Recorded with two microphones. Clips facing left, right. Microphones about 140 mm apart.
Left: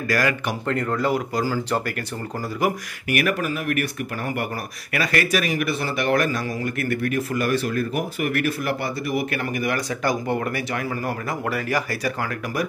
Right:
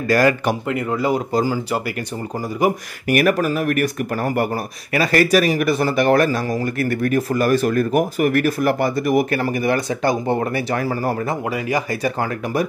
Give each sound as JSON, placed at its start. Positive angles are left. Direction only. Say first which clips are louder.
{"t": 0.1, "sound": "speech", "louder": "right 7 dB", "side_deg": -35}
{"t": 0.7, "sound": "speech", "louder": "left 2 dB", "side_deg": -10}
{"t": 1.1, "sound": "speech", "louder": "right 4 dB", "side_deg": -20}
{"t": 2.6, "sound": "speech", "louder": "right 4 dB", "side_deg": -20}
{"t": 3.1, "sound": "speech", "louder": "right 6 dB", "side_deg": -40}
{"t": 11.4, "sound": "speech", "louder": "right 3 dB", "side_deg": -15}